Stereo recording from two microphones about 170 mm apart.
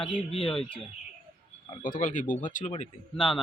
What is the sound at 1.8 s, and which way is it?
Speech, 50° left (ahead or behind).